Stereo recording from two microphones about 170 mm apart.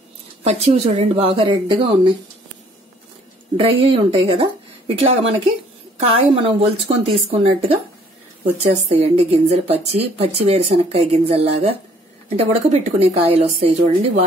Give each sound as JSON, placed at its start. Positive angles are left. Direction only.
{"t": 0.4, "sound": "a woman's voice", "side_deg": -40}
{"t": 3.5, "sound": "a woman's voice", "side_deg": -30}